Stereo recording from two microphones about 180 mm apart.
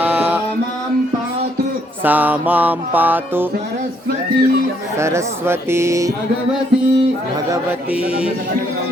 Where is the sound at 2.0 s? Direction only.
10° right (ahead or behind).